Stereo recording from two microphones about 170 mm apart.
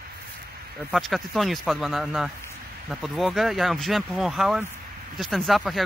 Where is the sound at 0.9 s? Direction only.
Centre (ahead or behind).